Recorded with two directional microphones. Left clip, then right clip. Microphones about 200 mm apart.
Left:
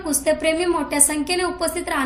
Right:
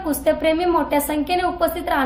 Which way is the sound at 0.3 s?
10° left (ahead or behind).